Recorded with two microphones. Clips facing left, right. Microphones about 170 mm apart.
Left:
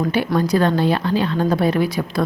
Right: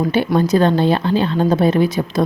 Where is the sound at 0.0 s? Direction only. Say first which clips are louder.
Right 3 dB; 25° right (ahead or behind).